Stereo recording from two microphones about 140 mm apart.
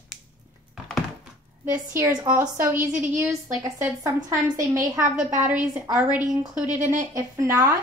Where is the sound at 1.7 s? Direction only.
20° right (ahead or behind).